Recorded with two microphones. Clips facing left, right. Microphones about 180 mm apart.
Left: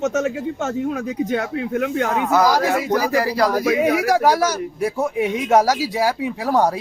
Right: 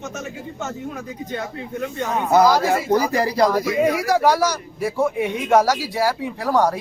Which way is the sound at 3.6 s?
90° left.